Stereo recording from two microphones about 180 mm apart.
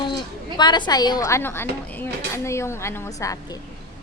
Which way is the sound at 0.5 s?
25° left (ahead or behind).